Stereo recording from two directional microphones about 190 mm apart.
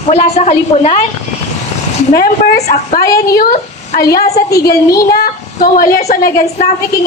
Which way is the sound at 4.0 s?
50° left (ahead or behind).